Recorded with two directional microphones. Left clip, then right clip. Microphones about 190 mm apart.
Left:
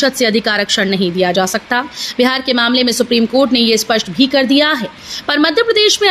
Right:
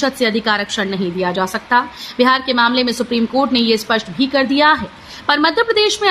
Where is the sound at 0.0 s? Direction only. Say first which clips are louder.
Left 3 dB; 15° left (ahead or behind).